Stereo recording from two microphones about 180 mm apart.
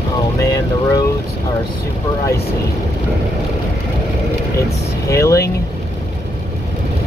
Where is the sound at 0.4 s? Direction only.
15° left (ahead or behind).